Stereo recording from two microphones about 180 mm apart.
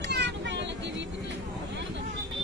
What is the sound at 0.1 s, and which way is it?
Vehicle, 75° right (ahead or behind).